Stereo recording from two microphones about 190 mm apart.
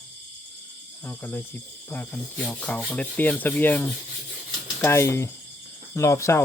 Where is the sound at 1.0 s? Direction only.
10° left (ahead or behind).